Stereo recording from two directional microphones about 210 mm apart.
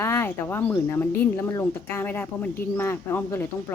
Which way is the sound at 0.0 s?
10° left (ahead or behind).